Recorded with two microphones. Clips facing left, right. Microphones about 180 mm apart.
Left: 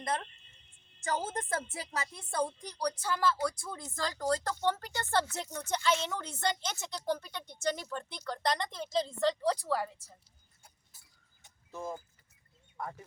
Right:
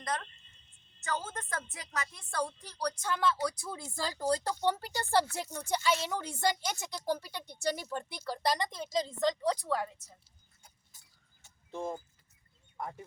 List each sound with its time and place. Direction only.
0.0 s a woman's voice: 30° left (ahead or behind); by 10.0 s 5° left (ahead or behind)
11.7 s speech: 30° right (ahead or behind)